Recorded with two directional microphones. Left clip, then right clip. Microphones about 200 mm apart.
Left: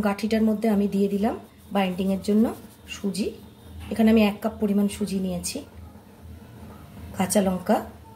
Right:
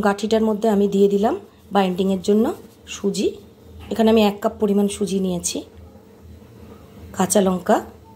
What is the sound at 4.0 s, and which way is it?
Speech, 35° right (ahead or behind).